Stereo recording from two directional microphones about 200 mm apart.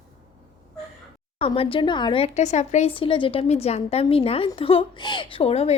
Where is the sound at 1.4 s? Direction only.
30° left (ahead or behind).